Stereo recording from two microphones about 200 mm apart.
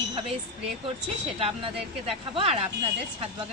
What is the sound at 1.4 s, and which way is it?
Speech, 30° right (ahead or behind).